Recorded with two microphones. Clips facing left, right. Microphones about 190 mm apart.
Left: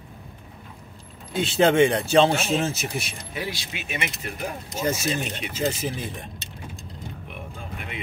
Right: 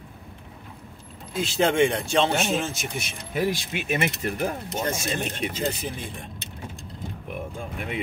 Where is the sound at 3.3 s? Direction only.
50° right (ahead or behind).